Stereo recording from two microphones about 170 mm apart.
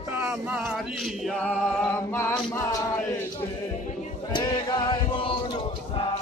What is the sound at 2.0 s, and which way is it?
A capella, 15° left (ahead or behind).